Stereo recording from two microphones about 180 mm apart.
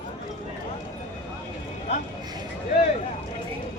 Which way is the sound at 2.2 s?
25° right (ahead or behind).